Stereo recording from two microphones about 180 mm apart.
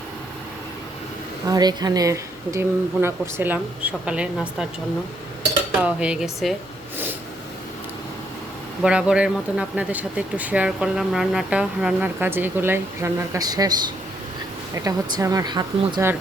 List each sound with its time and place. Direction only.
1.5 s speech: 20° right (ahead or behind); by 4.6 s 5° right (ahead or behind)
5.8 s speech: 5° right (ahead or behind)
8.8 s speech: 5° right (ahead or behind); by 13.7 s 20° right (ahead or behind)
14.8 s speech: 20° right (ahead or behind)